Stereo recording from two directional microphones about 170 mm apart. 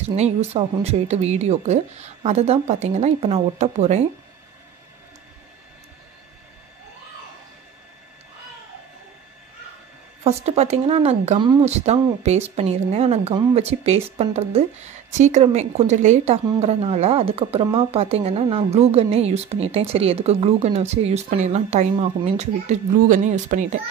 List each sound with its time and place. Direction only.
0.1 s a woman's voice: 40° right (ahead or behind)
10.2 s a woman's voice: 40° right (ahead or behind)